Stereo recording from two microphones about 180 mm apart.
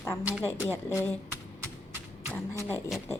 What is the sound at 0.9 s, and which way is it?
Speech, 15° left (ahead or behind).